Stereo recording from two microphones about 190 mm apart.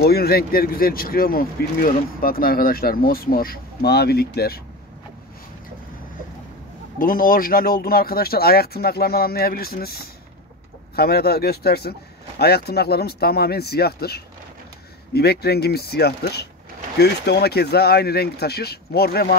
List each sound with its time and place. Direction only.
0.0 s speech: 55° left (ahead or behind)
7.0 s speech: 50° left (ahead or behind)